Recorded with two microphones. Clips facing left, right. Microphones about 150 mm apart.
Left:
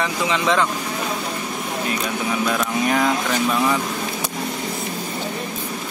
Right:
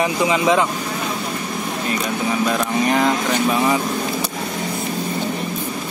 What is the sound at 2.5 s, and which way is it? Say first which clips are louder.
Speech: right 1 dB; centre (ahead or behind).